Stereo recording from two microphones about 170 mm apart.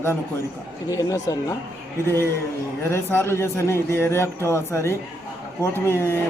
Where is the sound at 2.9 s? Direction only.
15° left (ahead or behind).